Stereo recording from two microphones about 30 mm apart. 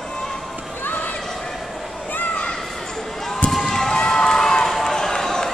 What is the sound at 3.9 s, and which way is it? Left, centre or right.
Run, left.